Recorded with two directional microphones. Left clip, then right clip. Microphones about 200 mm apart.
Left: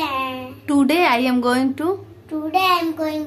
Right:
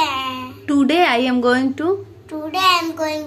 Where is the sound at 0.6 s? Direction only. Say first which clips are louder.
Right 1 dB; 10° right (ahead or behind).